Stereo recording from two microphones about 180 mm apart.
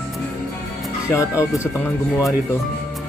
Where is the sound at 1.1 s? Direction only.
15° left (ahead or behind).